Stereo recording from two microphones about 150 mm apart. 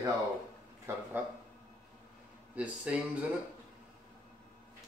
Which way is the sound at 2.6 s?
10° right (ahead or behind).